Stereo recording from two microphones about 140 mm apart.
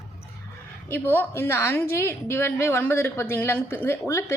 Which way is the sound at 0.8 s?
15° left (ahead or behind).